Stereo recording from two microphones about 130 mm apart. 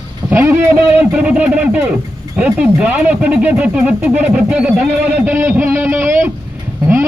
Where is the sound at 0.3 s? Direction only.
20° right (ahead or behind).